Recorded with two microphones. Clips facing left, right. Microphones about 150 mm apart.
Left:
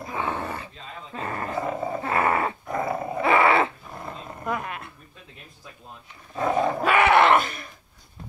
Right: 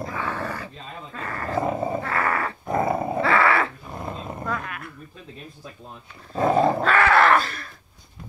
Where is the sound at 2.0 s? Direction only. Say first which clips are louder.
Left 2 dB; 20° left (ahead or behind).